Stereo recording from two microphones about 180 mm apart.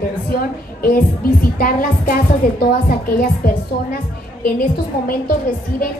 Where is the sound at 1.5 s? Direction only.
55° left (ahead or behind).